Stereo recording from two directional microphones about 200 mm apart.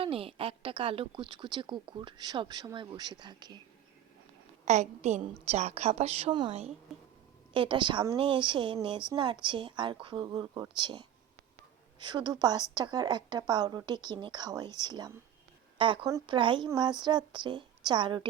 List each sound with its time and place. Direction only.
0.0 s a woman's voice: 30° right (ahead or behind)
4.6 s a woman's voice: 35° right (ahead or behind)